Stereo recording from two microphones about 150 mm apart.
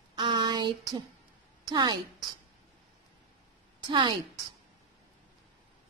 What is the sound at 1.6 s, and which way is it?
Speech, 30° right (ahead or behind).